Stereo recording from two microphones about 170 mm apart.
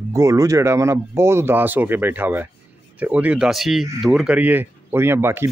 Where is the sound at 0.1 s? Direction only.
15° right (ahead or behind).